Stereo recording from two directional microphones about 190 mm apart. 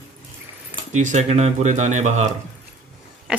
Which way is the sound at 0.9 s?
35° right (ahead or behind).